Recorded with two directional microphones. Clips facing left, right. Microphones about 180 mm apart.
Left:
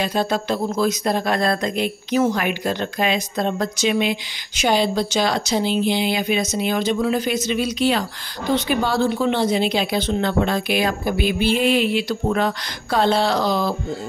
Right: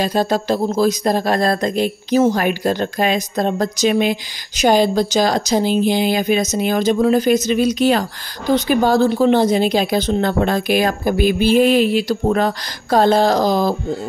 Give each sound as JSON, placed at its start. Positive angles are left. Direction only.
{"t": 0.0, "sound": "a woman's voice", "side_deg": -40}